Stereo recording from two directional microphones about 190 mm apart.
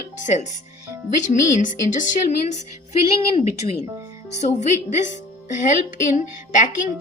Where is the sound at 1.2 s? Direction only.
40° left (ahead or behind).